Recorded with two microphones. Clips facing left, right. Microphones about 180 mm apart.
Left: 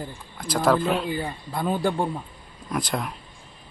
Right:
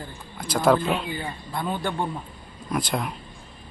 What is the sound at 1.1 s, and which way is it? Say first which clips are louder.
Speech: left 2 dB; 40° left (ahead or behind).